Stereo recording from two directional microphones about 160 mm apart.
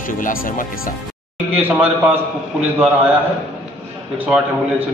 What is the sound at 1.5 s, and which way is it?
Speech, 10° right (ahead or behind).